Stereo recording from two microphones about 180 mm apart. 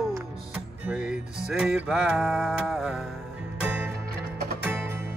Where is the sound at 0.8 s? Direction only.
5° right (ahead or behind).